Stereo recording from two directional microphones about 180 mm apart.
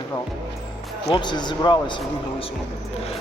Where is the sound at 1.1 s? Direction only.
25° left (ahead or behind).